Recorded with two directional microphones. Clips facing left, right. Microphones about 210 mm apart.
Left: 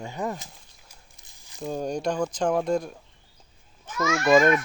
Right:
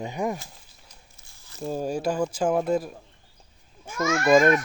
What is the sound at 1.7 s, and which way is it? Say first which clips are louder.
Speech: right 1 dB; 5° right (ahead or behind).